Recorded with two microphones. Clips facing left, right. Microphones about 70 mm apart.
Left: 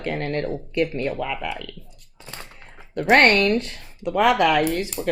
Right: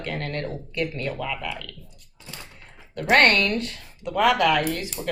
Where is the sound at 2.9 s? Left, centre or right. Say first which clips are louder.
Left 3 dB; left.